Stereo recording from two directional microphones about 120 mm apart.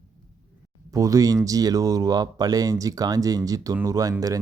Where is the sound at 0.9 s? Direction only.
30° right (ahead or behind).